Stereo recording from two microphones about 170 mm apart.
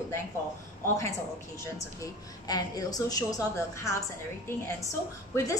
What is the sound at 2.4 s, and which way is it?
A woman's voice, 20° left (ahead or behind).